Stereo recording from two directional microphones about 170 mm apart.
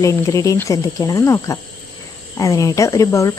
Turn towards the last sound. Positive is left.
turn(degrees=20)  # may be behind; listen again after turning